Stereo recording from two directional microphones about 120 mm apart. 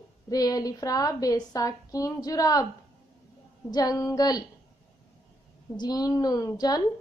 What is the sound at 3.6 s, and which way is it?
Speech, 35° left (ahead or behind).